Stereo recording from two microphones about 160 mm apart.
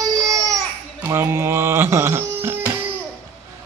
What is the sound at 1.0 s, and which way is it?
Music, 15° right (ahead or behind).